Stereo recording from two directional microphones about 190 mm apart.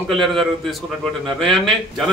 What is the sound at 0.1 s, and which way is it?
A man's voice, centre (ahead or behind).